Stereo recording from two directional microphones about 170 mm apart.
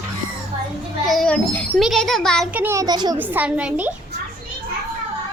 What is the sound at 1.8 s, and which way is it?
Speech, centre (ahead or behind).